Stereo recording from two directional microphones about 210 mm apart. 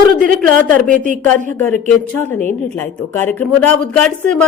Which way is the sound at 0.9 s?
35° right (ahead or behind).